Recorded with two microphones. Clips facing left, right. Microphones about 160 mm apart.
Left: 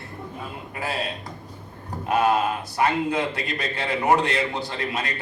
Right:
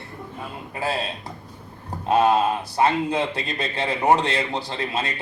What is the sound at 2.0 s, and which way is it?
A man's voice, 25° right (ahead or behind).